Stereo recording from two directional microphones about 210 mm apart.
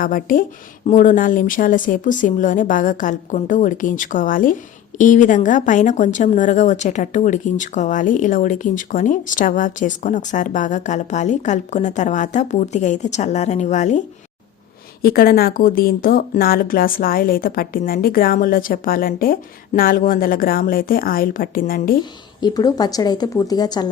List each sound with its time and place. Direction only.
0.0 s a woman's voice: 40° left (ahead or behind)
15.0 s a woman's voice: 45° left (ahead or behind)
22.4 s speech: 20° left (ahead or behind)